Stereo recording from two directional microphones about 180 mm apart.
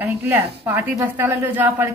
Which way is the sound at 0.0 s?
15° right (ahead or behind).